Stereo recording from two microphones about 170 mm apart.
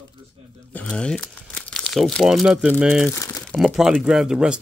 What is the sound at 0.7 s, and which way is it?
Speech, 5° left (ahead or behind).